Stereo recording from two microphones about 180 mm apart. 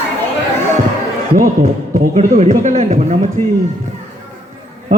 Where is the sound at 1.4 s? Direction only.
45° right (ahead or behind).